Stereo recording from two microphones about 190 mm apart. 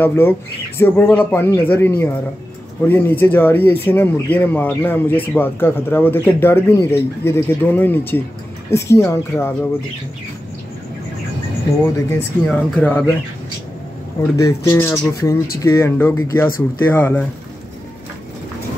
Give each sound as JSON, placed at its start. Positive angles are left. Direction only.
{"t": 0.0, "sound": "speech", "side_deg": 10}
{"t": 12.4, "sound": "speech", "side_deg": 5}
{"t": 14.3, "sound": "speech", "side_deg": 15}